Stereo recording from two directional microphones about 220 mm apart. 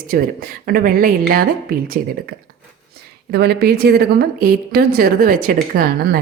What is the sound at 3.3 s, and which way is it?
A woman's voice, 45° right (ahead or behind).